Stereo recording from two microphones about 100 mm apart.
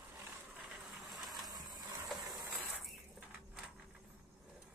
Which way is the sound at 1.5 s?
40° right (ahead or behind).